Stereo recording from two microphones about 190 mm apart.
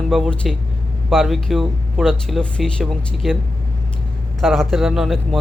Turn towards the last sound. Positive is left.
turn(degrees=0)  # may be behind; listen again after turning